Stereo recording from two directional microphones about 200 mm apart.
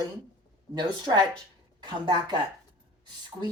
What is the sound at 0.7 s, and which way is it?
Speech, 20° right (ahead or behind).